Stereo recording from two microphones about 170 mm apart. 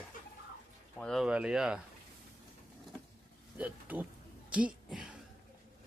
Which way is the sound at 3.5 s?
10° right (ahead or behind).